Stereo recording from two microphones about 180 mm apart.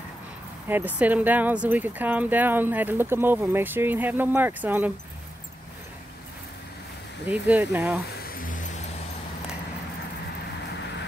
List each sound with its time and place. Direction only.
0.7 s speech: 10° right (ahead or behind)
7.2 s speech: 10° right (ahead or behind)
8.3 s vehicle: 50° left (ahead or behind)